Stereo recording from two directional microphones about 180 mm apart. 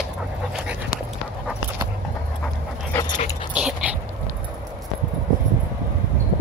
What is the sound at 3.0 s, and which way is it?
Dog, 45° left (ahead or behind).